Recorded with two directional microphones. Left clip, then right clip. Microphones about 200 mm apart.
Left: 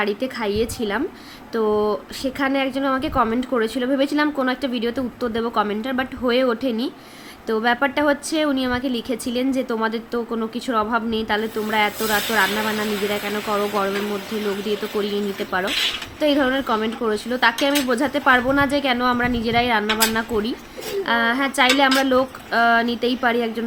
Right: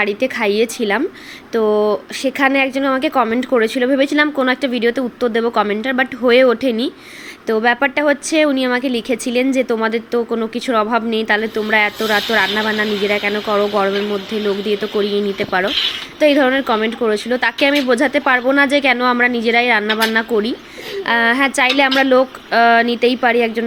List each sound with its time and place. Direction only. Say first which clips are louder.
0.0 s a woman's voice: right 6 dB; 5° right (ahead or behind)